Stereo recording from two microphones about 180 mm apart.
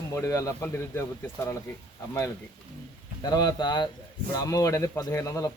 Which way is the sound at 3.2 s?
20° left (ahead or behind).